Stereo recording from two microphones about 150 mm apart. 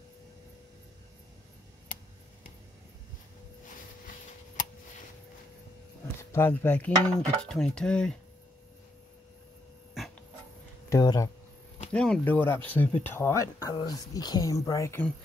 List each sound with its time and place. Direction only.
6.3 s speech: 15° left (ahead or behind)
10.9 s speech: 25° left (ahead or behind)
11.9 s speech: 5° left (ahead or behind)